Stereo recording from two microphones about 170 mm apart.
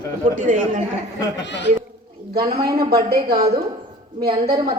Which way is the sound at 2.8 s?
65° right (ahead or behind).